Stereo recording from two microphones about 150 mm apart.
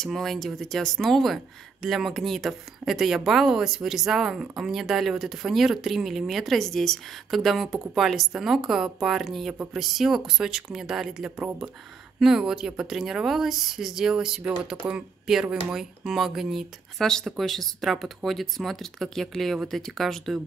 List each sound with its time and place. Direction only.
0.0 s speech: centre (ahead or behind)